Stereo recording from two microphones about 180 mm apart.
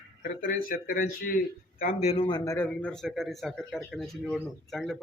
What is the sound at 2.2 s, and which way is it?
Speech, 20° left (ahead or behind).